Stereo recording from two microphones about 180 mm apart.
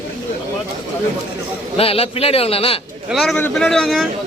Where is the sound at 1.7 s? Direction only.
35° left (ahead or behind).